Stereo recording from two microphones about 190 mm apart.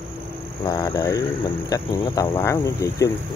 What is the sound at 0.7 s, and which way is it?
Speech, 15° left (ahead or behind).